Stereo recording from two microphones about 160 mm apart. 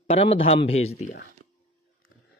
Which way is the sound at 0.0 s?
40° left (ahead or behind).